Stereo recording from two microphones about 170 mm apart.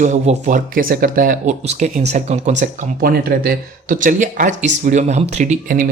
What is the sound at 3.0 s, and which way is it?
Speech, 60° right (ahead or behind).